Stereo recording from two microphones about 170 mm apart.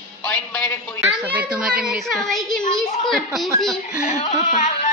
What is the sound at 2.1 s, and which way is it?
Speech, centre (ahead or behind).